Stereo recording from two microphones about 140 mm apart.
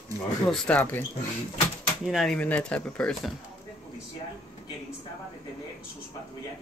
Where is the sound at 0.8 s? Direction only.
15° left (ahead or behind).